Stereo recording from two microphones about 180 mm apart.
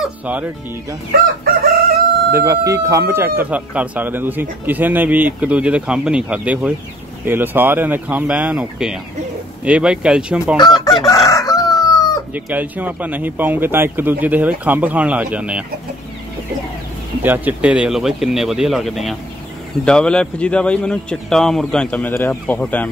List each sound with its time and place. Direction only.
0.0 s music: 10° right (ahead or behind)
1.2 s chicken: 55° right (ahead or behind)
2.3 s a man's voice: 20° right (ahead or behind)
10.6 s chicken: 25° left (ahead or behind)
12.4 s speech: 10° right (ahead or behind)
17.2 s a man's voice: 10° right (ahead or behind); by 22.8 s 10° left (ahead or behind)